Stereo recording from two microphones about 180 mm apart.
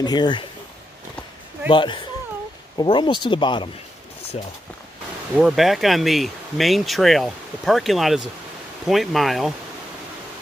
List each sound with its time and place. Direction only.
0.0 s speech: 25° left (ahead or behind)
1.7 s speech: 25° left (ahead or behind)
5.4 s speech: centre (ahead or behind)